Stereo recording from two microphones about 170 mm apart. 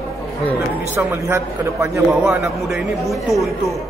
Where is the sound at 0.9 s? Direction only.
15° right (ahead or behind).